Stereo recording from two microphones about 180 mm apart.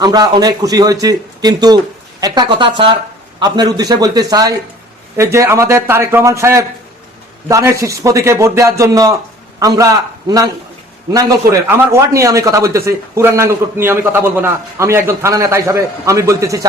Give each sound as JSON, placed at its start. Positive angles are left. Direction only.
{"t": 0.0, "sound": "a man's voice", "side_deg": -20}
{"t": 11.8, "sound": "a man's voice", "side_deg": -15}